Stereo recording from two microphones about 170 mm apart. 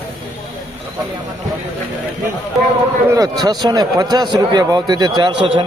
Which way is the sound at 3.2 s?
25° right (ahead or behind).